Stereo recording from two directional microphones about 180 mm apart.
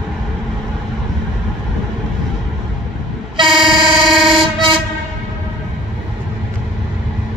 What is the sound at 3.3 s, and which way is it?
Vehicle, 25° right (ahead or behind).